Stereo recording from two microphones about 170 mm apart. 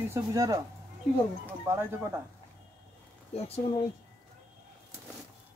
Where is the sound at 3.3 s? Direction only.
35° left (ahead or behind).